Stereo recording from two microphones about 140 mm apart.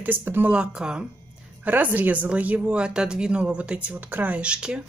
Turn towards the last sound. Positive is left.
turn(degrees=-5)  # may be behind; listen again after turning